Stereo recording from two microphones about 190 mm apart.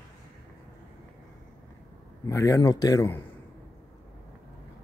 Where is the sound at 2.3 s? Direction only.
15° left (ahead or behind).